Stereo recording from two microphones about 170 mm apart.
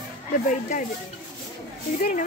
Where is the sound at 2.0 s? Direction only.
50° left (ahead or behind).